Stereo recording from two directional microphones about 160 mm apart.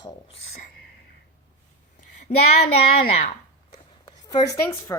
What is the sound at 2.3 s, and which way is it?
Child singing, 35° left (ahead or behind).